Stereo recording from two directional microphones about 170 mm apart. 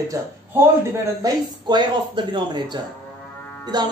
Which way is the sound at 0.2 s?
20° right (ahead or behind).